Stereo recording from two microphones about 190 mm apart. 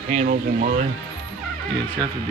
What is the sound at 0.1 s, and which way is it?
Speech, 40° right (ahead or behind).